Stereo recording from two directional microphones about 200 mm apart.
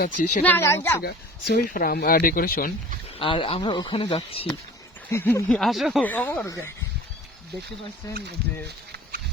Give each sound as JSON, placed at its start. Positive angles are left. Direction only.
{"t": 0.0, "sound": "speech", "side_deg": 40}
{"t": 0.4, "sound": "speech", "side_deg": 10}
{"t": 1.0, "sound": "speech", "side_deg": 50}
{"t": 3.2, "sound": "speech", "side_deg": 25}
{"t": 5.1, "sound": "speech", "side_deg": 15}
{"t": 5.5, "sound": "speech", "side_deg": 0}
{"t": 8.4, "sound": "speech", "side_deg": -55}